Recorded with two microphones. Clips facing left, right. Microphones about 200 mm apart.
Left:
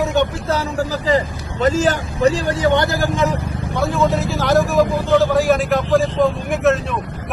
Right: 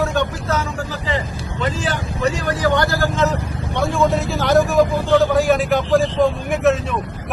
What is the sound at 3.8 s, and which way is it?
A man's voice, centre (ahead or behind).